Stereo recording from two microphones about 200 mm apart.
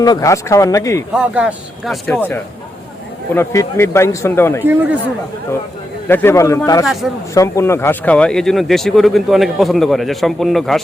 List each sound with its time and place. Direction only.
0.0 s a man's voice: 15° left (ahead or behind)
1.1 s a man's voice: 5° right (ahead or behind); by 4.6 s 15° left (ahead or behind)
4.6 s speech: 10° right (ahead or behind)
6.1 s a man's voice: 10° left (ahead or behind)
7.0 s speech: 5° right (ahead or behind)
7.3 s speech: 15° left (ahead or behind)